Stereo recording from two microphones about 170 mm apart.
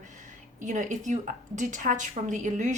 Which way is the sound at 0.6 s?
45° right (ahead or behind).